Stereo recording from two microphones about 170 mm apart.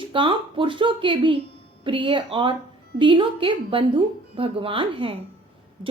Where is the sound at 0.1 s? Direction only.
30° right (ahead or behind).